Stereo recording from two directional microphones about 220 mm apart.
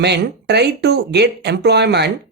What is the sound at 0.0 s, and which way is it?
Speech, 50° right (ahead or behind).